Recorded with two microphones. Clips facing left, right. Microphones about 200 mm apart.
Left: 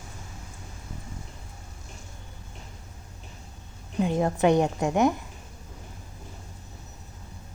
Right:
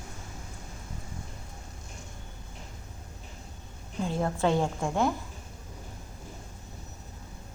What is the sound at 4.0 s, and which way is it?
A woman's voice, 20° left (ahead or behind).